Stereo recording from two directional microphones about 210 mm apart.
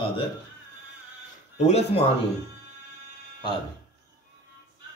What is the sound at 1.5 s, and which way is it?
Speech, 30° left (ahead or behind).